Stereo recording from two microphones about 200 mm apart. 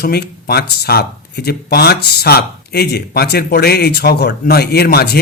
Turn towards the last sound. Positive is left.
turn(degrees=50)  # may be behind; listen again after turning